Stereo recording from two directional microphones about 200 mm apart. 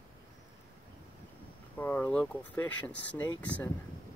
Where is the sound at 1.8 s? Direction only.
10° left (ahead or behind).